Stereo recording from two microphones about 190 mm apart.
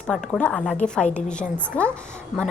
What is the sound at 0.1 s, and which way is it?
A woman's voice, 5° left (ahead or behind).